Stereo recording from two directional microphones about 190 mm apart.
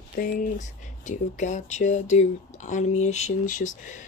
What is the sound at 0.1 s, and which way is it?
Speech, 45° left (ahead or behind).